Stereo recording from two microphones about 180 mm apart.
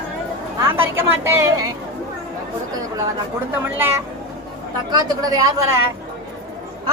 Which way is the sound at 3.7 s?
10° right (ahead or behind).